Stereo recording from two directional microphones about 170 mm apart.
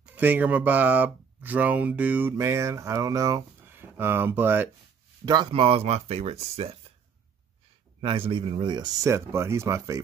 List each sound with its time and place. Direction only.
0.0 s speech: 10° right (ahead or behind)
5.2 s speech: 25° right (ahead or behind)
8.0 s speech: 30° right (ahead or behind)